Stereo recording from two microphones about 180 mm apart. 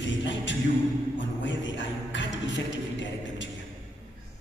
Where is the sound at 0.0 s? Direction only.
90° left.